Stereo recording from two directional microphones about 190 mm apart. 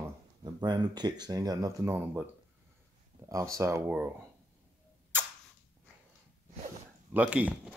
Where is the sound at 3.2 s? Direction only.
15° right (ahead or behind).